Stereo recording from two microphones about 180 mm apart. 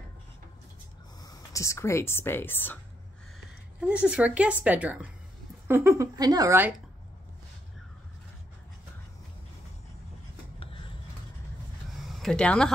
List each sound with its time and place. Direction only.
1.2 s speech: 20° left (ahead or behind)
3.8 s a woman's voice: 5° right (ahead or behind)
12.0 s a sound: centre (ahead or behind)